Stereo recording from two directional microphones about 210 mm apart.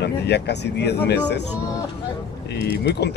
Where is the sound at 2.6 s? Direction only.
50° left (ahead or behind).